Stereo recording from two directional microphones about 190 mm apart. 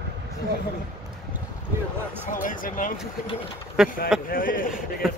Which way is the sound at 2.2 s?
45° left (ahead or behind).